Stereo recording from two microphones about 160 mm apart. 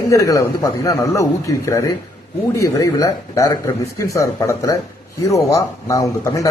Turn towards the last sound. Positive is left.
turn(degrees=20)  # may be behind; listen again after turning